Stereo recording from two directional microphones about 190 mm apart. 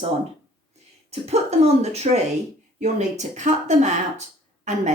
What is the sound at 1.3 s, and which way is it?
A woman's voice, 35° right (ahead or behind).